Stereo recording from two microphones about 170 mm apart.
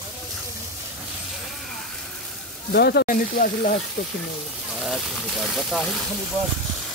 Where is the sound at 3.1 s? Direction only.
55° left (ahead or behind).